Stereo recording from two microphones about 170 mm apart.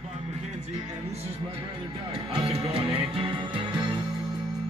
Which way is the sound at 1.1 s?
35° right (ahead or behind).